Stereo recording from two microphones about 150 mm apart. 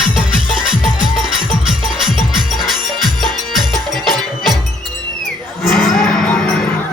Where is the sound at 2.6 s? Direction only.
Centre (ahead or behind).